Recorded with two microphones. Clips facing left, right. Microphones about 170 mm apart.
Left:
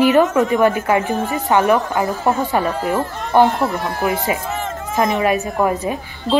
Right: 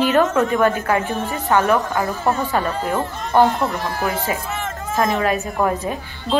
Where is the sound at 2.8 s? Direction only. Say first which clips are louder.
Left 2 dB; 5° left (ahead or behind).